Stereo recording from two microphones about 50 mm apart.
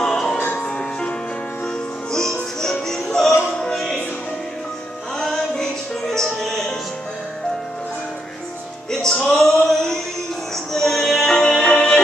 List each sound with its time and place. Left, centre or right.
0.0 s music: centre
0.4 s music: left
0.7 s music: centre
2.1 s music: centre
5.2 s music: centre
9.0 s music: centre